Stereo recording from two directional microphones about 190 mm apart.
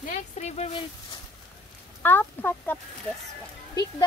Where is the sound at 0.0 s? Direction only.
35° left (ahead or behind).